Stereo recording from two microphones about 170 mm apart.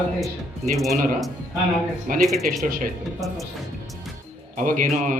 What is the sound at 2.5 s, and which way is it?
Speech, 55° right (ahead or behind).